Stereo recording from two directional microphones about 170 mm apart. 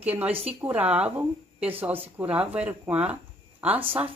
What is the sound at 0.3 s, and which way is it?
Speech, 35° right (ahead or behind).